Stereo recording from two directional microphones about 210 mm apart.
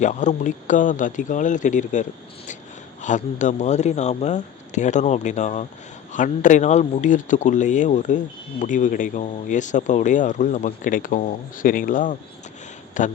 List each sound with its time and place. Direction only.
0.0 s a man's voice: 35° left (ahead or behind)